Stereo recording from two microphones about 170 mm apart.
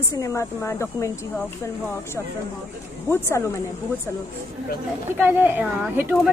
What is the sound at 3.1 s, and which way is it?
Speech, 15° left (ahead or behind).